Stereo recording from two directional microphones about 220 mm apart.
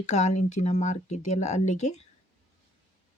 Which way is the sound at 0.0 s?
30° left (ahead or behind).